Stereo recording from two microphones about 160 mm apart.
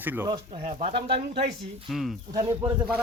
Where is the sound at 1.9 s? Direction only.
Centre (ahead or behind).